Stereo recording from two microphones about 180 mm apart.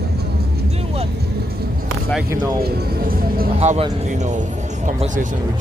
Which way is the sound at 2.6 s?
55° right (ahead or behind).